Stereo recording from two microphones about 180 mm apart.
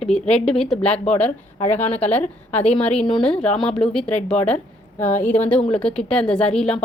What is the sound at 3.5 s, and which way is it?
Speech, 35° left (ahead or behind).